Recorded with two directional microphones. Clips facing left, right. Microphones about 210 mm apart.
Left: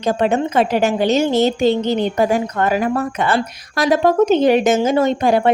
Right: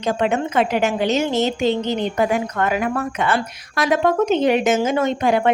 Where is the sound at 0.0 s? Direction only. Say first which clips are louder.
Left 3 dB; 35° left (ahead or behind).